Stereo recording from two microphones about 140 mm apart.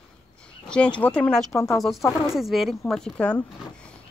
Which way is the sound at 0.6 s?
5° left (ahead or behind).